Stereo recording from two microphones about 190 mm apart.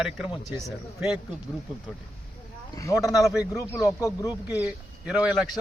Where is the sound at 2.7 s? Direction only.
15° left (ahead or behind).